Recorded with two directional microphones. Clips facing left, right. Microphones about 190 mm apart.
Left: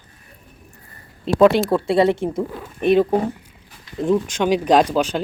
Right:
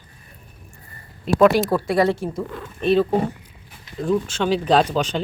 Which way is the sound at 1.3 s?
30° left (ahead or behind).